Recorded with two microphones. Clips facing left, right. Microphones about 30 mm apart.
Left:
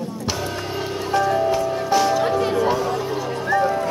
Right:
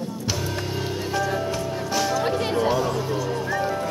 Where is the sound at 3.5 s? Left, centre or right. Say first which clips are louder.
Left 8 dB; centre.